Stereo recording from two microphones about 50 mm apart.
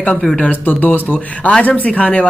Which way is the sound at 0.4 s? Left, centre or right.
Left.